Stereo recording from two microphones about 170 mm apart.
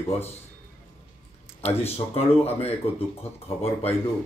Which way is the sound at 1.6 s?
35° left (ahead or behind).